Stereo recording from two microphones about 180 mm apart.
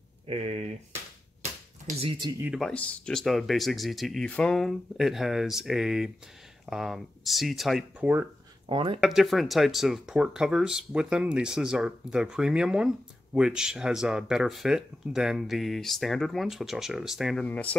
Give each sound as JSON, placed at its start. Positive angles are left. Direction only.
{"t": 0.3, "sound": "speech", "side_deg": -35}
{"t": 1.9, "sound": "speech", "side_deg": -30}
{"t": 2.4, "sound": "speech", "side_deg": -5}
{"t": 2.7, "sound": "speech", "side_deg": 5}
{"t": 8.6, "sound": "speech", "side_deg": -30}
{"t": 9.0, "sound": "speech", "side_deg": 0}